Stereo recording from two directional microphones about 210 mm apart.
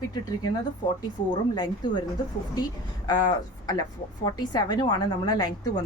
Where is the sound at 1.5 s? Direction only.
20° left (ahead or behind).